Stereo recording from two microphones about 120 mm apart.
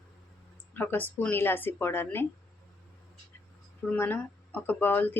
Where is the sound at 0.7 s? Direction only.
15° left (ahead or behind).